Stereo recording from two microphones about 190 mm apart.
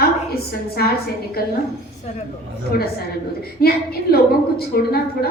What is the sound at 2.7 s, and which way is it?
A woman's voice, 50° left (ahead or behind).